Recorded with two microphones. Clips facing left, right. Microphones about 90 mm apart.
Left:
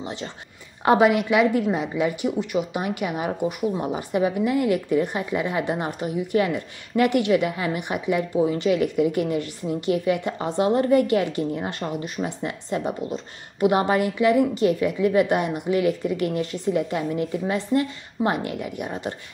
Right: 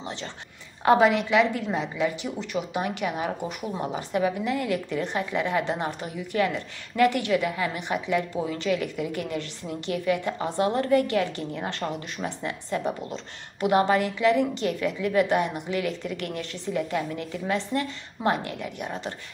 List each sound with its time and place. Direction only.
0.0 s a woman's voice: 15° left (ahead or behind)